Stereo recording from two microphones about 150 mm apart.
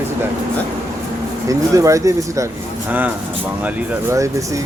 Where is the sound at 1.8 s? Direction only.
20° right (ahead or behind).